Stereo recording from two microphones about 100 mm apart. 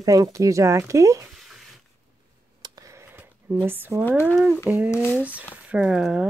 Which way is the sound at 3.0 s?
20° right (ahead or behind).